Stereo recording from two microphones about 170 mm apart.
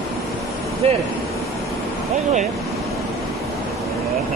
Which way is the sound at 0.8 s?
35° right (ahead or behind).